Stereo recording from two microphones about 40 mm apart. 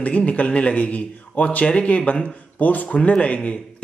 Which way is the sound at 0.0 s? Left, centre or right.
Left.